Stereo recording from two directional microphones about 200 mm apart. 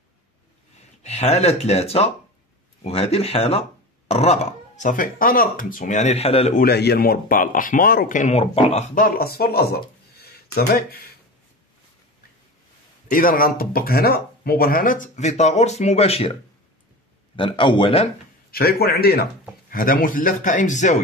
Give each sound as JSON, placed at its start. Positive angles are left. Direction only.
{"t": 1.0, "sound": "speech", "side_deg": 35}
{"t": 6.6, "sound": "speech", "side_deg": 55}
{"t": 13.1, "sound": "speech", "side_deg": 45}
{"t": 17.4, "sound": "speech", "side_deg": 25}
{"t": 18.5, "sound": "speech", "side_deg": 50}